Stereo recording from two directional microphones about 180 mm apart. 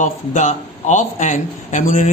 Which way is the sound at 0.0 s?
45° left (ahead or behind).